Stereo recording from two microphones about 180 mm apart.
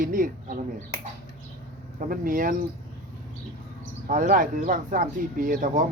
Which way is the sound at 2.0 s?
50° right (ahead or behind).